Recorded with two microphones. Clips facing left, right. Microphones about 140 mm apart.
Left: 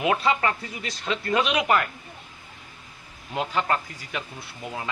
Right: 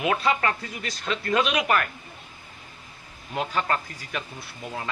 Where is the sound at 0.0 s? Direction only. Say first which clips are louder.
Left 1 dB; 20° left (ahead or behind).